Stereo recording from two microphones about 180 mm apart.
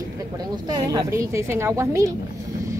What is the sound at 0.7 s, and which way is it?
A woman's voice, 20° right (ahead or behind).